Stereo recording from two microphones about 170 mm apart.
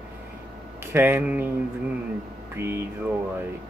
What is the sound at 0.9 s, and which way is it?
Speech, 10° right (ahead or behind).